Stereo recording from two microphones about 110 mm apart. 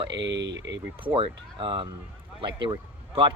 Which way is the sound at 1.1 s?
50° right (ahead or behind).